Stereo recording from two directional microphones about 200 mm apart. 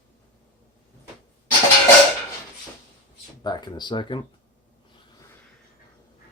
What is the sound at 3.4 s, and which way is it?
Speech, 20° left (ahead or behind).